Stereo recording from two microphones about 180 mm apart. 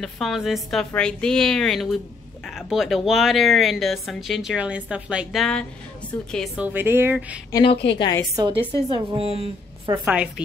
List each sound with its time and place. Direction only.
0.0 s a woman's voice: centre (ahead or behind)
7.5 s a woman's voice: 30° left (ahead or behind)
8.4 s a woman's voice: 25° right (ahead or behind)
10.0 s a woman's voice: 5° right (ahead or behind)